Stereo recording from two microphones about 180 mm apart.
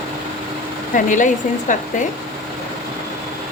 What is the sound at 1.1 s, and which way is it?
Speech, 45° left (ahead or behind).